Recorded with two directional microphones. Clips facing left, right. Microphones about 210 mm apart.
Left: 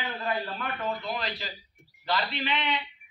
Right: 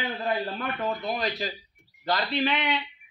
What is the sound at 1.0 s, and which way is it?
A man's voice, 45° right (ahead or behind).